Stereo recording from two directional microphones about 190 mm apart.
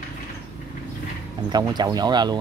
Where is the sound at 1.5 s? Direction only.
20° right (ahead or behind).